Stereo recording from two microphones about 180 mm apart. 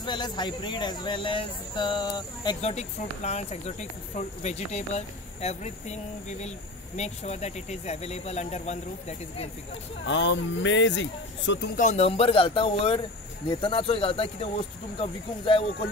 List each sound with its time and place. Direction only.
0.0 s speech: 25° left (ahead or behind)
2.7 s speech: 40° left (ahead or behind)
10.0 s speech: 90° left
11.7 s speech: 40° left (ahead or behind)